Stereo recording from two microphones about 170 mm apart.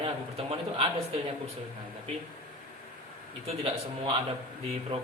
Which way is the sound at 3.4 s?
35° right (ahead or behind).